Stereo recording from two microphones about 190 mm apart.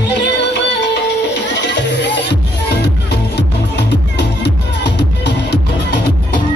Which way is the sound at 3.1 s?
65° left (ahead or behind).